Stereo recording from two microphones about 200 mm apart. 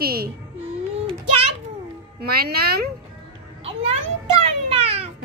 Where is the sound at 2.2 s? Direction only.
50° right (ahead or behind).